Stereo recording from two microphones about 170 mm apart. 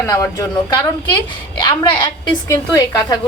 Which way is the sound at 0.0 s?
20° left (ahead or behind).